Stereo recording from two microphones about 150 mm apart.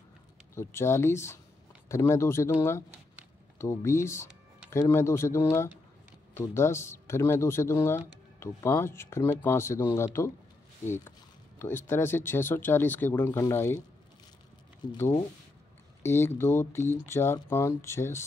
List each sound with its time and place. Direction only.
0.6 s speech: 20° left (ahead or behind)
3.5 s speech: 20° left (ahead or behind)
11.1 s speech: 15° left (ahead or behind)
14.8 s speech: 30° left (ahead or behind)
16.0 s speech: 15° left (ahead or behind)